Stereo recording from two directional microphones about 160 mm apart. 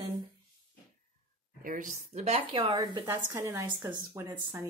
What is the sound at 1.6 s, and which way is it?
Speech, 55° right (ahead or behind).